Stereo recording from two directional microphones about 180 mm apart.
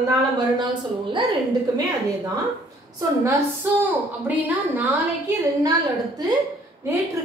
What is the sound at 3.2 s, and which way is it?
A woman's voice, 15° right (ahead or behind).